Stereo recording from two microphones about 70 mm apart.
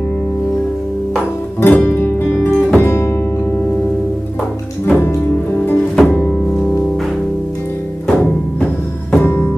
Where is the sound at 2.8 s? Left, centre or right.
Left.